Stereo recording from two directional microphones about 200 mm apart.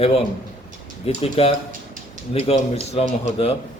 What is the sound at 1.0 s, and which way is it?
A man's voice, 30° left (ahead or behind).